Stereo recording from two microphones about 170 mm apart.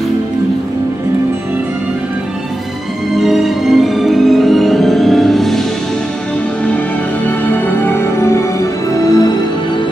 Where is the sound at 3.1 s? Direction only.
Centre (ahead or behind).